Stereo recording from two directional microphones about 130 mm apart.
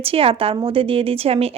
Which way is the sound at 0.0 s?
45° right (ahead or behind).